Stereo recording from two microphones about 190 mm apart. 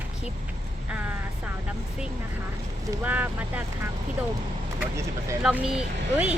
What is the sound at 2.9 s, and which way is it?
Speech, 10° right (ahead or behind).